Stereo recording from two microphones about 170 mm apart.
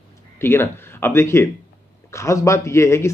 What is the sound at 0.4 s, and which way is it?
Speech, 15° left (ahead or behind).